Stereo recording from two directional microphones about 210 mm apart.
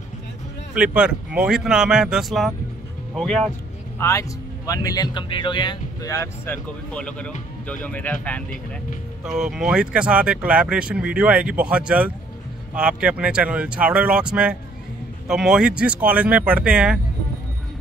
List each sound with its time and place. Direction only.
0.7 s speech: 5° right (ahead or behind)
4.0 s speech: 15° left (ahead or behind); by 17.0 s 5° right (ahead or behind)